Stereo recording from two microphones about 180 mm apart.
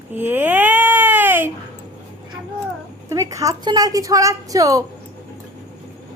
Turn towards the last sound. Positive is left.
turn(degrees=-20)  # may be behind; listen again after turning